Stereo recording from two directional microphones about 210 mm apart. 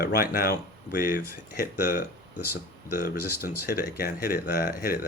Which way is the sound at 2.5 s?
50° left (ahead or behind).